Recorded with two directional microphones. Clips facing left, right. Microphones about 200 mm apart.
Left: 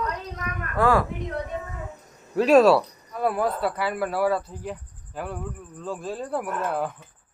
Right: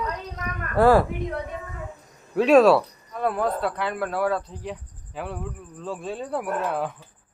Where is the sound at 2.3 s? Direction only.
Centre (ahead or behind).